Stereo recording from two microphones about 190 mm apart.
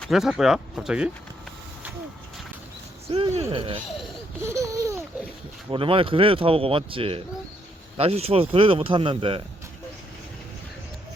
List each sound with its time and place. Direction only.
0.0 s speech: centre (ahead or behind)
3.1 s speech: 30° right (ahead or behind)
4.4 s babbling: 15° right (ahead or behind)
5.7 s speech: 30° right (ahead or behind)